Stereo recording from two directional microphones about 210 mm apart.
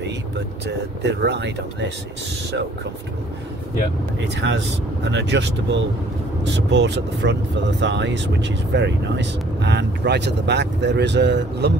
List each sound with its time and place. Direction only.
1.0 s speech: 55° right (ahead or behind)
4.2 s speech: 55° right (ahead or behind)